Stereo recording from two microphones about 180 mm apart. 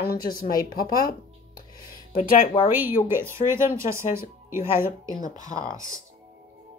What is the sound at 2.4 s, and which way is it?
Speech, 35° left (ahead or behind).